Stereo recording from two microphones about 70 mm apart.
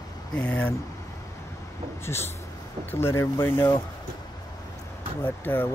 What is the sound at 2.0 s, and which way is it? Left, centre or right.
Speech, left.